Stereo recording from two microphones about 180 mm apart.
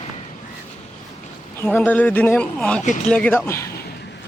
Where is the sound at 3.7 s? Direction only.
60° left (ahead or behind).